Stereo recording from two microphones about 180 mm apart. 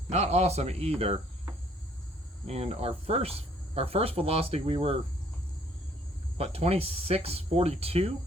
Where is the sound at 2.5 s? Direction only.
35° right (ahead or behind).